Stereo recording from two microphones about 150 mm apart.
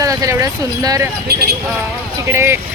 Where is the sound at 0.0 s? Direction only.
20° right (ahead or behind).